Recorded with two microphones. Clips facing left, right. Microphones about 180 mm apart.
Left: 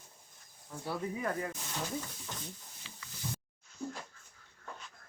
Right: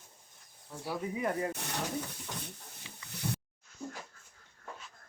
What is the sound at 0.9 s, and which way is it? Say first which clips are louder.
Speech: right 2 dB; 20° right (ahead or behind).